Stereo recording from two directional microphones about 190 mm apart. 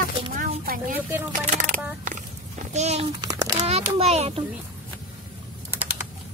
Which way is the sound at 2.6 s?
35° right (ahead or behind).